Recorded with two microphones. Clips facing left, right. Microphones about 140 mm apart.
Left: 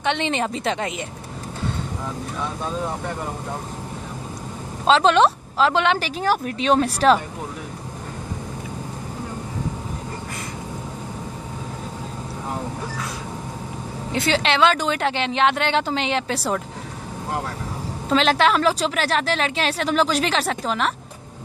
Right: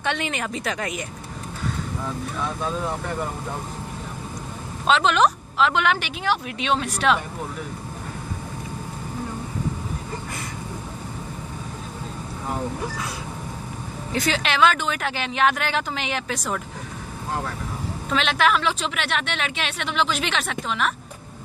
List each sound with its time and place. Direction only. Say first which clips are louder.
0.0 s a woman's voice: left 4 dB; 25° left (ahead or behind)
4.8 s a woman's voice: left 3 dB; 30° left (ahead or behind)
14.1 s a woman's voice: left 3 dB; 30° left (ahead or behind)
18.1 s a woman's voice: left 3 dB; 35° left (ahead or behind)